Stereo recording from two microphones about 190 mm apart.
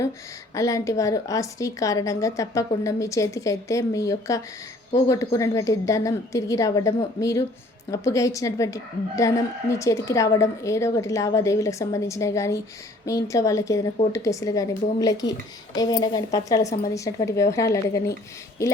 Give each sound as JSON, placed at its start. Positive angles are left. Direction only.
{"t": 0.5, "sound": "a woman's voice", "side_deg": 15}